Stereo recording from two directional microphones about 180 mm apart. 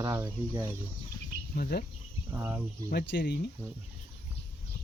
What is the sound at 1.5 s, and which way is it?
Speech, 60° left (ahead or behind).